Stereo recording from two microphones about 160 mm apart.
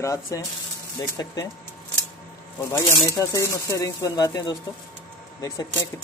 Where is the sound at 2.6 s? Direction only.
15° left (ahead or behind).